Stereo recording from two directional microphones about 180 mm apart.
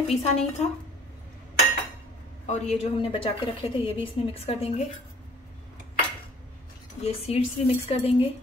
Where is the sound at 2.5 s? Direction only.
35° left (ahead or behind).